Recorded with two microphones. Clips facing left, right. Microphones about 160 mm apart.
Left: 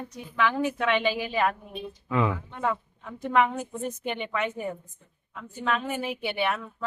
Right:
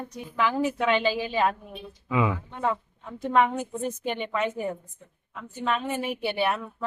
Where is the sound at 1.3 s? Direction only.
30° right (ahead or behind).